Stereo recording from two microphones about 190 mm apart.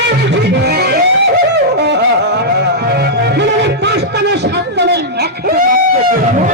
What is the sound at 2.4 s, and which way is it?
Music, 55° right (ahead or behind).